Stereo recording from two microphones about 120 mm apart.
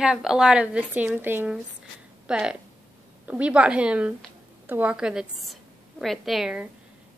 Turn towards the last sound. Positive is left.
turn(degrees=-5)  # may be behind; listen again after turning